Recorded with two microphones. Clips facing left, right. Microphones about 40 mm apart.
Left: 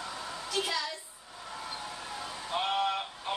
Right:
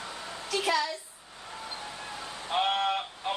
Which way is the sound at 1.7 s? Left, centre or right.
Centre.